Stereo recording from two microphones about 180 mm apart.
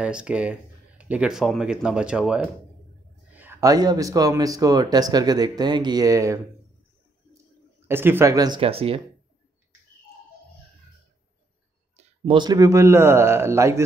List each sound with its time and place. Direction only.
0.0 s speech: 5° right (ahead or behind)
3.3 s speech: 15° right (ahead or behind)
7.9 s a man's voice: 10° right (ahead or behind)
8.5 s speech: 30° right (ahead or behind)
12.3 s a man's voice: 25° right (ahead or behind)